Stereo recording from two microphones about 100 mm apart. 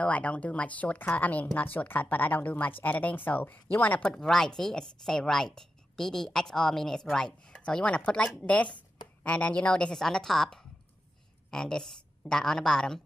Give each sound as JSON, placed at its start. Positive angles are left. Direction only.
{"t": 0.0, "sound": "a woman's voice", "side_deg": 10}